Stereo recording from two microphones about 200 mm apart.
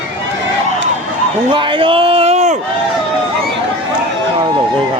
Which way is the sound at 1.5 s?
25° right (ahead or behind).